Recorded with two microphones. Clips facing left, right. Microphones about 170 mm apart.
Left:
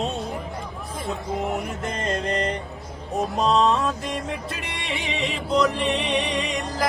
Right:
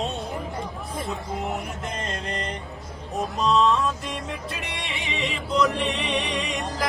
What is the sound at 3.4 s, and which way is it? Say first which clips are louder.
Music: left 1 dB; 45° left (ahead or behind).